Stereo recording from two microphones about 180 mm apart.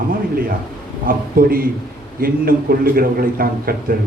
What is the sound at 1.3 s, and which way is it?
A man's voice, 55° right (ahead or behind).